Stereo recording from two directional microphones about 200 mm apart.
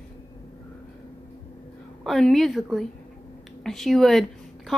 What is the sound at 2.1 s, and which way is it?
A woman's voice, centre (ahead or behind).